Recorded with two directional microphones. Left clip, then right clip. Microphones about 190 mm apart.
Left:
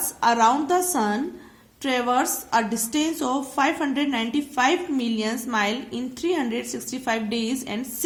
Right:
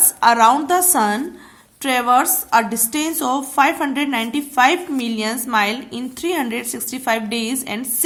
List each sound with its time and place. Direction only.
0.2 s a woman's voice: 20° right (ahead or behind)